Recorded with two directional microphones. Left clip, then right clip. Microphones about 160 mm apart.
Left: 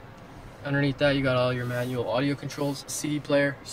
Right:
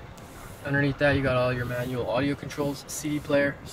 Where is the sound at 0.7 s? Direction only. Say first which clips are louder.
Right 1 dB; 25° left (ahead or behind).